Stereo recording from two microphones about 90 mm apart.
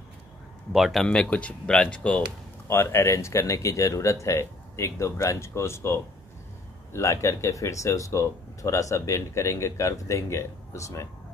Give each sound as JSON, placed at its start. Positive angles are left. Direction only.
{"t": 0.7, "sound": "speech", "side_deg": -5}
{"t": 1.0, "sound": "speech", "side_deg": 10}
{"t": 2.7, "sound": "speech", "side_deg": 30}